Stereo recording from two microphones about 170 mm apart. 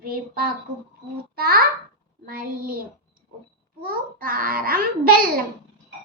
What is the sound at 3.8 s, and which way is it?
A child's voice, 55° right (ahead or behind).